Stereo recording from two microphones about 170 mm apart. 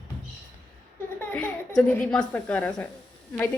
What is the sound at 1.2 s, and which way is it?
A woman's voice, 10° left (ahead or behind).